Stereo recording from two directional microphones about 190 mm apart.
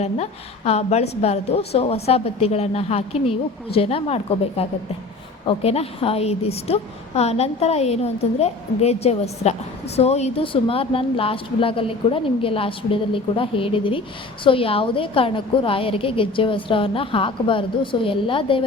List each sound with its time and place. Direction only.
0.0 s a woman's voice: 35° left (ahead or behind)